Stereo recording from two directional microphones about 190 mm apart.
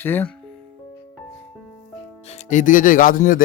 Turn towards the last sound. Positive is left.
turn(degrees=50)  # may be behind; listen again after turning